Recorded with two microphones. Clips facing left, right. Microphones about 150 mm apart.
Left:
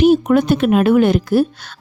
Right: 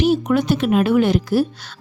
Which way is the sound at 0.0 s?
50° left (ahead or behind).